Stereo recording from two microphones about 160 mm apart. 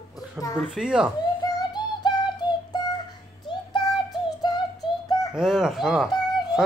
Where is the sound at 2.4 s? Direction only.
25° left (ahead or behind).